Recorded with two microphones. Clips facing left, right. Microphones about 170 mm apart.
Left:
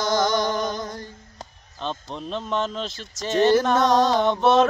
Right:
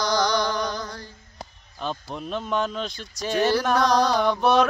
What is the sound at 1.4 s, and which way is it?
Speech, 5° right (ahead or behind).